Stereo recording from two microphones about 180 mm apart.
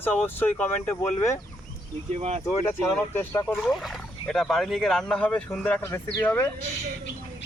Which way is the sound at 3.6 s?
Centre (ahead or behind).